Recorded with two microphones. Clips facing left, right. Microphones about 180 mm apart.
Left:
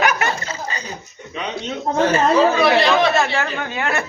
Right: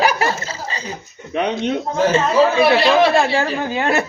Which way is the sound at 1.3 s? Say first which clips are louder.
Right 7 dB; 55° right (ahead or behind).